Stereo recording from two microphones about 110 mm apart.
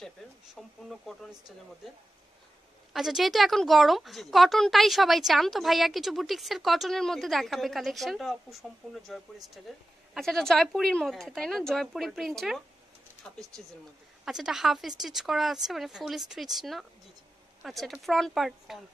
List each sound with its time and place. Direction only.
0.6 s a woman's voice: centre (ahead or behind)
2.9 s a woman's voice: 5° right (ahead or behind)
14.2 s a woman's voice: 5° right (ahead or behind)